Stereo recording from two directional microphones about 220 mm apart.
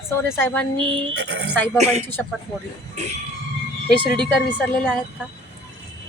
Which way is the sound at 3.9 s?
5° left (ahead or behind).